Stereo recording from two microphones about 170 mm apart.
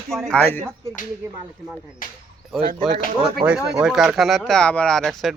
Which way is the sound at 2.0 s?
55° left (ahead or behind).